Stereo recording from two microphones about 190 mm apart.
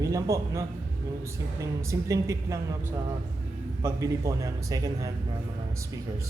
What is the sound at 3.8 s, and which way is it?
A man's voice, 15° right (ahead or behind).